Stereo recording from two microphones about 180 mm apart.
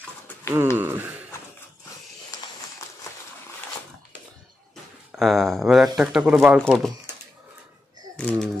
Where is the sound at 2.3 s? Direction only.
20° left (ahead or behind).